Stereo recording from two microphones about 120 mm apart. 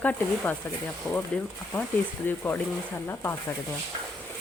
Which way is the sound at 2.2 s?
15° left (ahead or behind).